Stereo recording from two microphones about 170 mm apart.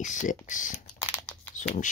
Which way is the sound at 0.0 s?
50° left (ahead or behind).